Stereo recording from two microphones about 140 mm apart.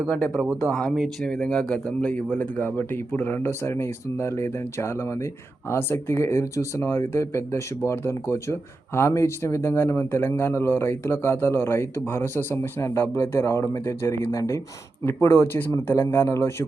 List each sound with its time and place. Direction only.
0.1 s speech: 10° left (ahead or behind)